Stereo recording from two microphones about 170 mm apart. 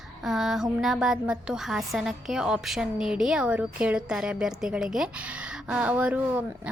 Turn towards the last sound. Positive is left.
turn(degrees=-5)  # may be behind; listen again after turning